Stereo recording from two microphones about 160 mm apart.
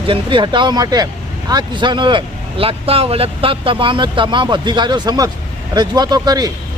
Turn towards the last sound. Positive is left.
turn(degrees=-25)  # may be behind; listen again after turning